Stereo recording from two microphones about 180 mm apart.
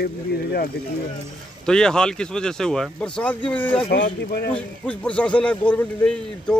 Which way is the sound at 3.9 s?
60° left (ahead or behind).